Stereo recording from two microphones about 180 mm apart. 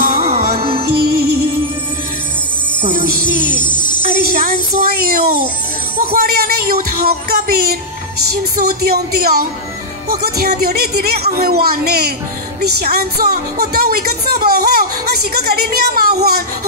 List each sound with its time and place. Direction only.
0.0 s music: 50° right (ahead or behind)
0.6 s music: 30° right (ahead or behind)
0.9 s music: 60° right (ahead or behind)
2.9 s music: 55° right (ahead or behind)
3.6 s music: 25° left (ahead or behind)
4.0 s speech: 55° right (ahead or behind)